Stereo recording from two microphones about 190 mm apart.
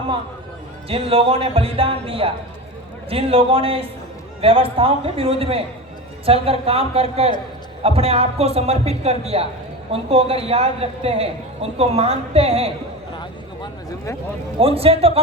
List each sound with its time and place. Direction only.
0.9 s a man's voice: 30° right (ahead or behind)
13.1 s a sound: 20° left (ahead or behind)
14.6 s a man's voice: 30° right (ahead or behind)